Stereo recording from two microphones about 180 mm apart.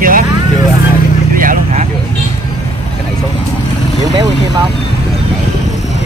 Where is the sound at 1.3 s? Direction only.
50° right (ahead or behind).